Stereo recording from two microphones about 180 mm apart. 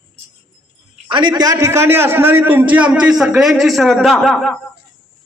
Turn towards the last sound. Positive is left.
turn(degrees=0)  # may be behind; listen again after turning